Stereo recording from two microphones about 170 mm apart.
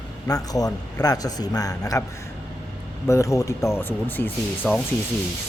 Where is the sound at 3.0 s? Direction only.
15° left (ahead or behind).